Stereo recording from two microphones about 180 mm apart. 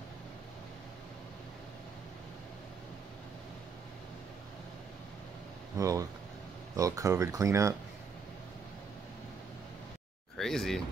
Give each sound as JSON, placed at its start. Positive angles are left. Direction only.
{"t": 5.8, "sound": "speech", "side_deg": -20}
{"t": 10.3, "sound": "speech", "side_deg": 0}